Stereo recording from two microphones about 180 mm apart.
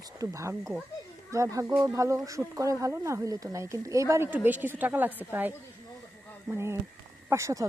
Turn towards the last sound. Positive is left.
turn(degrees=-15)  # may be behind; listen again after turning